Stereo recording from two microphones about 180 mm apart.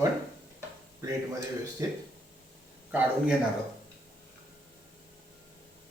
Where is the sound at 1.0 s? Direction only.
20° right (ahead or behind).